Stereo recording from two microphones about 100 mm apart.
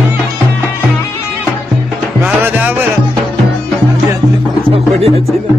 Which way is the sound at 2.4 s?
20° right (ahead or behind).